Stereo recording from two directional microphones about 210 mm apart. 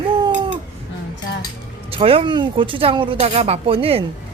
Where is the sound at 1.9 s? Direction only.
25° right (ahead or behind).